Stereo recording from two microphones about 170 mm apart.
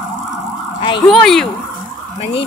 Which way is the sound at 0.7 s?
30° left (ahead or behind).